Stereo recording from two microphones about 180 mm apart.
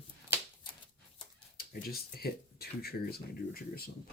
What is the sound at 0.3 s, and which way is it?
Shuffling cards, 10° right (ahead or behind).